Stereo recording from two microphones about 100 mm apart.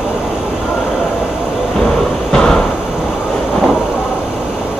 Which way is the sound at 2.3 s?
5° left (ahead or behind).